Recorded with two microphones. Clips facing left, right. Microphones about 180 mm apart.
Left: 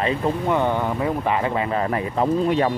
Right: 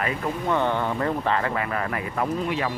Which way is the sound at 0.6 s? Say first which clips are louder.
Left 2 dB; 10° left (ahead or behind).